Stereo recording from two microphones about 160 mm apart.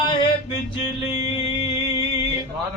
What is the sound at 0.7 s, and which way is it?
Music, 35° left (ahead or behind).